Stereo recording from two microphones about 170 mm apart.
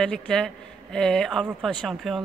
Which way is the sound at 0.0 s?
5° left (ahead or behind).